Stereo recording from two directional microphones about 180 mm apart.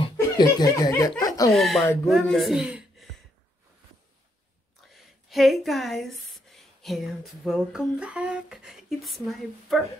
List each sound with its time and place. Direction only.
0.0 s speech: 25° left (ahead or behind)
1.2 s chuckle: 20° left (ahead or behind)
1.5 s speech: centre (ahead or behind)
4.9 s speech: centre (ahead or behind)